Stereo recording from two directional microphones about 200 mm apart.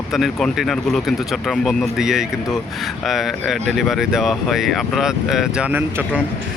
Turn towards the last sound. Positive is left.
turn(degrees=-5)  # may be behind; listen again after turning